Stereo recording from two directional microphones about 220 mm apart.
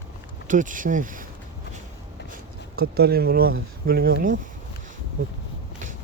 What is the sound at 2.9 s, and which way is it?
Speech, 45° right (ahead or behind).